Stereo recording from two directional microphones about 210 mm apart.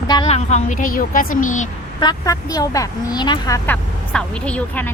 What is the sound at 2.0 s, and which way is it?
A woman's voice, 20° left (ahead or behind).